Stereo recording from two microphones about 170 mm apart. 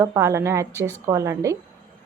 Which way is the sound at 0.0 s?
15° right (ahead or behind).